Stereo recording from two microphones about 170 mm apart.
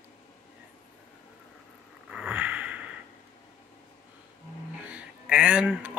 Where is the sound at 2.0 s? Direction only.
5° right (ahead or behind).